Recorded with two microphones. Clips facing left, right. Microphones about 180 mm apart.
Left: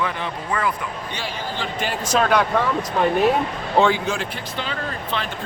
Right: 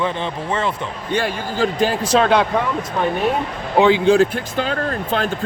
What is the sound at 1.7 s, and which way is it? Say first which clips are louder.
Speech: right 3 dB; 35° right (ahead or behind).